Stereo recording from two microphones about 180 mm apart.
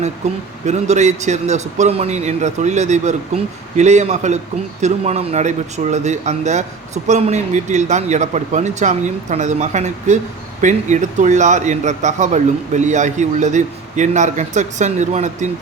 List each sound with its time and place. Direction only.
0.6 s speech: 40° right (ahead or behind)